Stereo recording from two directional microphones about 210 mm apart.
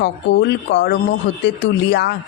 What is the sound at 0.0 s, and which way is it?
Speech, 55° left (ahead or behind).